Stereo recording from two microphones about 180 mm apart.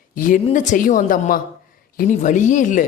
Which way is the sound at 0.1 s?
45° left (ahead or behind).